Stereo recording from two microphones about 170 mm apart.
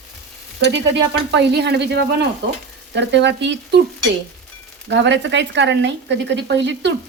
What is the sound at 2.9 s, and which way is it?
Speech, 90° right.